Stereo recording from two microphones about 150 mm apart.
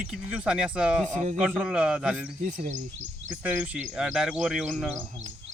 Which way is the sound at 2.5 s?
60° right (ahead or behind).